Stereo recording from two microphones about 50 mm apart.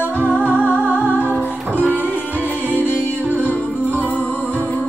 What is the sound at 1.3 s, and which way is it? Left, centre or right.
Music, left.